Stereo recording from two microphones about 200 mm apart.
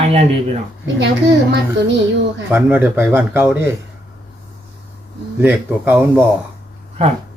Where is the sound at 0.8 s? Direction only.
60° right (ahead or behind).